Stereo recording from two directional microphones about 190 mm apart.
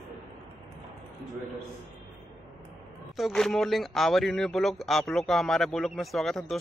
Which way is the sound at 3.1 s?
Centre (ahead or behind).